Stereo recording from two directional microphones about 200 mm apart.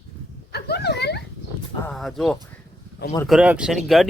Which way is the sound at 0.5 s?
55° left (ahead or behind).